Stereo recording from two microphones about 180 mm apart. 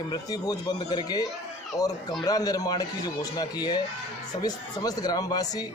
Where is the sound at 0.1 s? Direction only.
20° left (ahead or behind).